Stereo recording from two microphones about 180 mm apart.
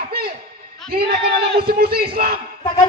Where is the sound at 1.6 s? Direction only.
55° right (ahead or behind).